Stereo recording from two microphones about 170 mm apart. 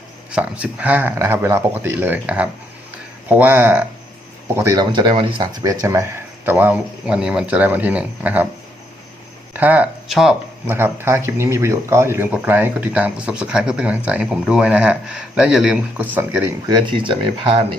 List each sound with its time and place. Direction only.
0.3 s speech: 5° right (ahead or behind)
9.5 s speech: 10° right (ahead or behind)
16.6 s speech: 25° right (ahead or behind)